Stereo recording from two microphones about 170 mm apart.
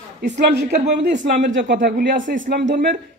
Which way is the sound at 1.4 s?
90° right.